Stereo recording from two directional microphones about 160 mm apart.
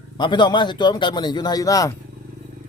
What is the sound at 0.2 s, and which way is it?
A man's voice, 30° left (ahead or behind).